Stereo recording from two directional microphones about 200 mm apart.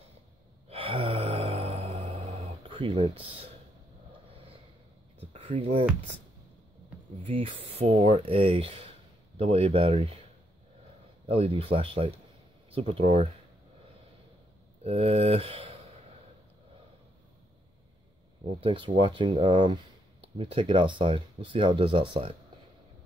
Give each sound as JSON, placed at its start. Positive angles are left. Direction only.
{"t": 0.7, "sound": "a sound", "side_deg": -30}
{"t": 5.2, "sound": "a sound", "side_deg": -30}
{"t": 7.2, "sound": "speech", "side_deg": -30}
{"t": 11.2, "sound": "speech", "side_deg": -25}
{"t": 14.8, "sound": "speech", "side_deg": -30}
{"t": 18.4, "sound": "speech", "side_deg": -25}